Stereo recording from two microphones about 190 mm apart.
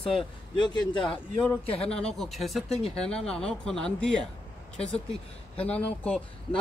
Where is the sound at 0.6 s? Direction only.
25° left (ahead or behind).